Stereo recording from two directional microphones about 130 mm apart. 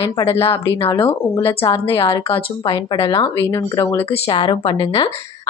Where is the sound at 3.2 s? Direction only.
25° left (ahead or behind).